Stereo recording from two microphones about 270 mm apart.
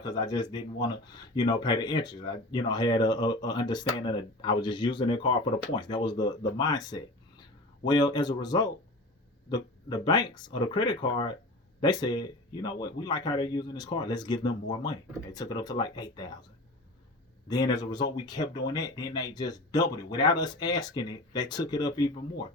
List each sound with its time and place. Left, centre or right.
0.0 s speech: centre
17.5 s speech: centre